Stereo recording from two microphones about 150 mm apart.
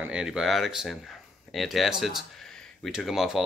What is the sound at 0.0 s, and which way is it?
Speech, 5° right (ahead or behind).